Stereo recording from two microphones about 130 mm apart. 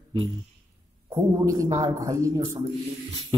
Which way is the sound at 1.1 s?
25° right (ahead or behind).